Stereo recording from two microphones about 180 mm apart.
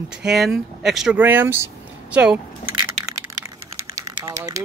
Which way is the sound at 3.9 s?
20° right (ahead or behind).